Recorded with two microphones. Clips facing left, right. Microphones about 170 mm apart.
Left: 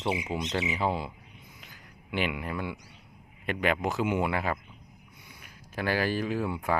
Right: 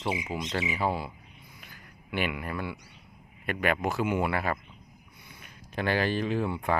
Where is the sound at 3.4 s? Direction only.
20° left (ahead or behind).